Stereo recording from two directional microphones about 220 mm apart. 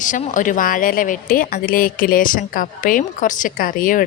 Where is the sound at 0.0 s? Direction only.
35° left (ahead or behind).